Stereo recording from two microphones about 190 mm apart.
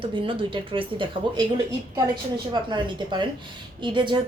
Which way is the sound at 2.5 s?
25° right (ahead or behind).